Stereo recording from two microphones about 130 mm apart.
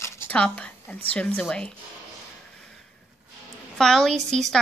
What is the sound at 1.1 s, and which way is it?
Speech, 10° left (ahead or behind).